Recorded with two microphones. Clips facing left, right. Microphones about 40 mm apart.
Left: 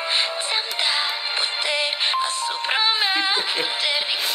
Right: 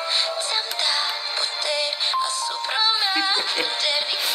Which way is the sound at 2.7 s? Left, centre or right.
Left.